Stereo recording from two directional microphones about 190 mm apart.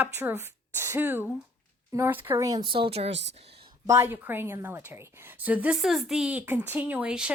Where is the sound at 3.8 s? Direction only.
15° right (ahead or behind).